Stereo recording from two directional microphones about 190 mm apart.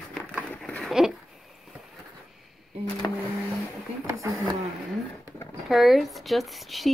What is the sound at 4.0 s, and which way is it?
Speech, 15° right (ahead or behind).